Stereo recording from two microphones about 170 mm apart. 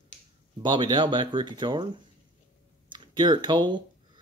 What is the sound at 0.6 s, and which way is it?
Speech, 25° right (ahead or behind).